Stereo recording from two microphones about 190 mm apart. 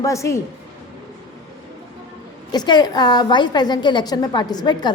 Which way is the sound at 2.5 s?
20° left (ahead or behind).